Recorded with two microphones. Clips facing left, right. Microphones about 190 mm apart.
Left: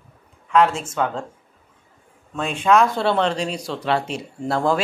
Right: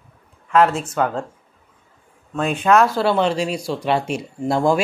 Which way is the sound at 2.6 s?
5° right (ahead or behind).